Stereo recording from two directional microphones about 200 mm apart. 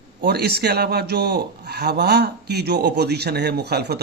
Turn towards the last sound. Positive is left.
turn(degrees=-55)  # may be behind; listen again after turning